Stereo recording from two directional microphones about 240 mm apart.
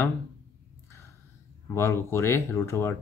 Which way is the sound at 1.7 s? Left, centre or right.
Centre.